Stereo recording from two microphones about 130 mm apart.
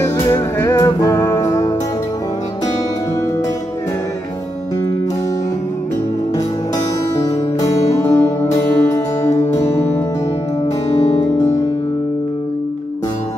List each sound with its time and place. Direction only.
0.3 s music: 25° left (ahead or behind)
7.6 s music: 25° left (ahead or behind)
9.3 s music: 60° left (ahead or behind)